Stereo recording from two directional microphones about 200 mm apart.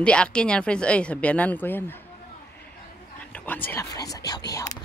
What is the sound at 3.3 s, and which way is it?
Whispering, 10° left (ahead or behind).